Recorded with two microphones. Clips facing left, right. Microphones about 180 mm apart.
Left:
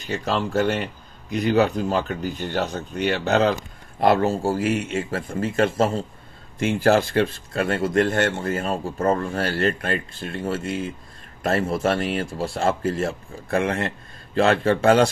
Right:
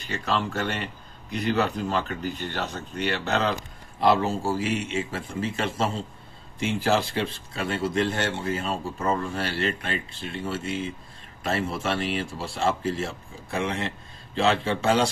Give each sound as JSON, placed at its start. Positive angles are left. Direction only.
{"t": 0.0, "sound": "speech", "side_deg": 45}